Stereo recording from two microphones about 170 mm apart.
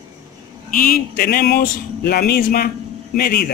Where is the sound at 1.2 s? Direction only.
65° left (ahead or behind).